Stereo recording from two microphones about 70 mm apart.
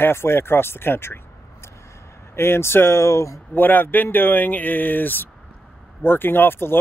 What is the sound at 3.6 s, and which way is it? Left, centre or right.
Speech, left.